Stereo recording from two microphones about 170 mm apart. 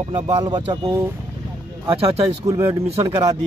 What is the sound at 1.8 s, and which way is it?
Speech, 35° right (ahead or behind).